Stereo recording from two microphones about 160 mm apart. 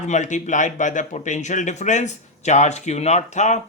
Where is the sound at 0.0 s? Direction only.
50° left (ahead or behind).